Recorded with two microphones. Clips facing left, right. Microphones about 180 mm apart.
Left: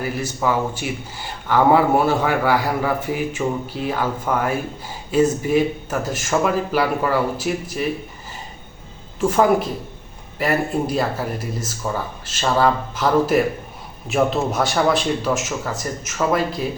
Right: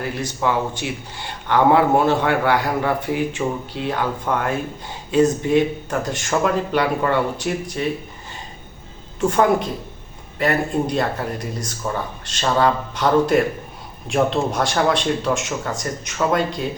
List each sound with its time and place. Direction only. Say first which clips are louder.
0.0 s a man's voice: even; 5° left (ahead or behind)
9.3 s a man's voice: left 1 dB; 5° left (ahead or behind)